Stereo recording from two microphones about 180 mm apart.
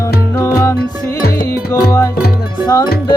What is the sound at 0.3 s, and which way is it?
Music, 15° left (ahead or behind).